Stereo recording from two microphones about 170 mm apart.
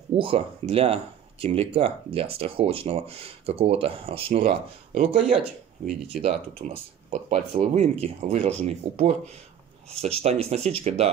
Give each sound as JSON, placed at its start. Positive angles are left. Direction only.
{"t": 0.1, "sound": "speech", "side_deg": -35}